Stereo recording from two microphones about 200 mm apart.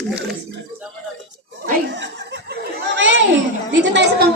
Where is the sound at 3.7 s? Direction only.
60° right (ahead or behind).